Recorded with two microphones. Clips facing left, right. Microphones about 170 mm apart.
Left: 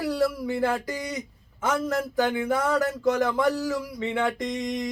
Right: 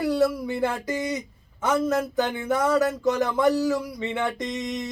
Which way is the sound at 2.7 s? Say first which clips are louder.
Right 1 dB; 20° right (ahead or behind).